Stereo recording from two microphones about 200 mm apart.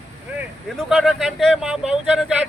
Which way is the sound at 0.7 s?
Centre (ahead or behind).